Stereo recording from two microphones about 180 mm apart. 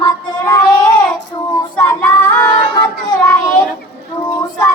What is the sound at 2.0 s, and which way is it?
Music, 20° left (ahead or behind).